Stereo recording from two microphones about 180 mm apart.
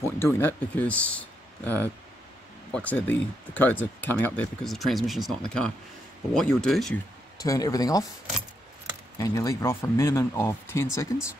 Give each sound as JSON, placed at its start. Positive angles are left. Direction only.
{"t": 0.0, "sound": "speech", "side_deg": 10}
{"t": 7.3, "sound": "speech", "side_deg": 20}
{"t": 9.2, "sound": "speech", "side_deg": 20}